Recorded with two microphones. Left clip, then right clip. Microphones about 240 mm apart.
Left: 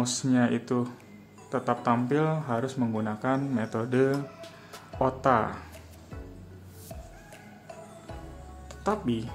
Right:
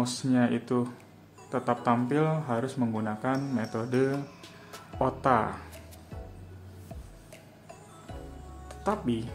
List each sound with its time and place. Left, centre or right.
0.0 s speech: centre
4.4 s music: centre
8.6 s speech: centre